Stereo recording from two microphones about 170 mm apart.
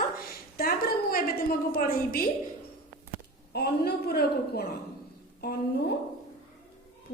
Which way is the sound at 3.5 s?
70° left (ahead or behind).